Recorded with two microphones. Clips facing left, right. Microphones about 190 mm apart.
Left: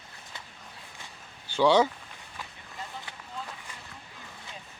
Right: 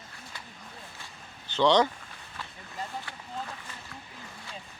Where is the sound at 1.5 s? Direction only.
10° left (ahead or behind).